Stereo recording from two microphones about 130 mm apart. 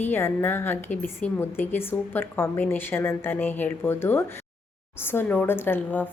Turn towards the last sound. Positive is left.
turn(degrees=15)  # may be behind; listen again after turning